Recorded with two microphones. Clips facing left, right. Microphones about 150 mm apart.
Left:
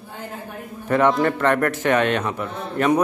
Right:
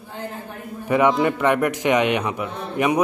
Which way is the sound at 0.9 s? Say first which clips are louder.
Even; 10° right (ahead or behind).